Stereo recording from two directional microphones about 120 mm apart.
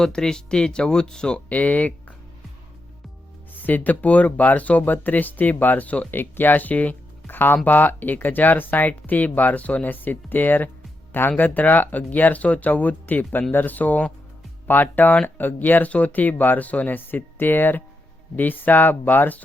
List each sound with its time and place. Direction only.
0.0 s speech: 5° left (ahead or behind)
3.5 s speech: 15° left (ahead or behind)